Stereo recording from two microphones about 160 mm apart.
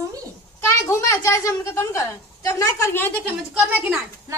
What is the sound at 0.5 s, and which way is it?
A woman's voice, 15° left (ahead or behind).